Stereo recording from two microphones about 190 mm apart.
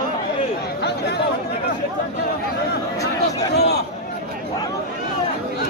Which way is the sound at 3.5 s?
60° left (ahead or behind).